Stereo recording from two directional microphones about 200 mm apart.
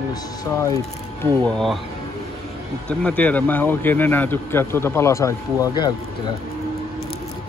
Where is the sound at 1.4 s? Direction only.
Centre (ahead or behind).